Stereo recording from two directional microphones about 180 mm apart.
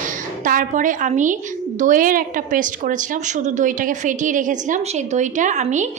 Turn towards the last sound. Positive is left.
turn(degrees=-40)  # may be behind; listen again after turning